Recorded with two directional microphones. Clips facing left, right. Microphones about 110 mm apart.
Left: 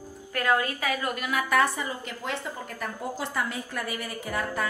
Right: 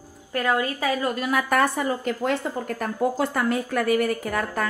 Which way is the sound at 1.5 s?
50° right (ahead or behind).